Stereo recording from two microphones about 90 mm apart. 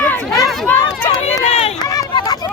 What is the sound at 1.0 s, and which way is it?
Run, 90° left.